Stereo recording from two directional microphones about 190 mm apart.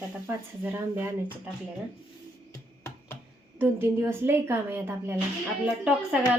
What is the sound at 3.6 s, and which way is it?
A woman's voice, 10° right (ahead or behind).